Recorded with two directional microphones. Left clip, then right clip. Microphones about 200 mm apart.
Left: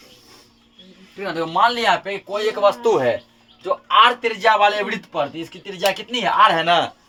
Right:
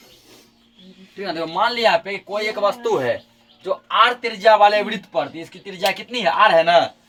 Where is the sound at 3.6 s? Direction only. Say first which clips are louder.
Left 2 dB; 20° left (ahead or behind).